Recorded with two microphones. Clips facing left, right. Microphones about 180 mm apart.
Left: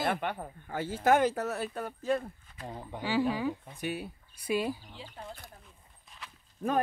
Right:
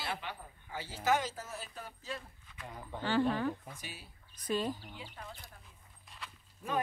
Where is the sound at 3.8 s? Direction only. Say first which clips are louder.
Left 15 dB; 60° left (ahead or behind).